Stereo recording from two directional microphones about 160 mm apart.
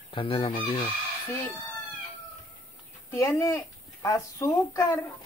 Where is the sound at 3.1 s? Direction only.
15° left (ahead or behind).